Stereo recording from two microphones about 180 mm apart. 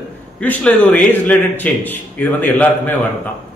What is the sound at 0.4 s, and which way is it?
A man's voice, 10° left (ahead or behind).